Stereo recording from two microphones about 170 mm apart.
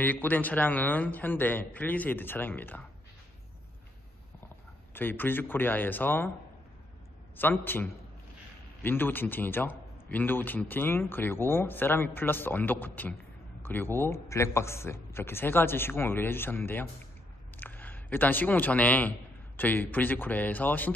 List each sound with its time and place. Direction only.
0.0 s a man's voice: 10° left (ahead or behind)
4.9 s a man's voice: 10° left (ahead or behind)
7.3 s a man's voice: 10° left (ahead or behind)